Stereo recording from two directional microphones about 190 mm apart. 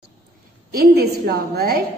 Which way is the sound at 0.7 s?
55° right (ahead or behind).